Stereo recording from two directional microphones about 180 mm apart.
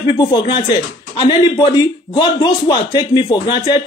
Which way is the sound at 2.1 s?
25° left (ahead or behind).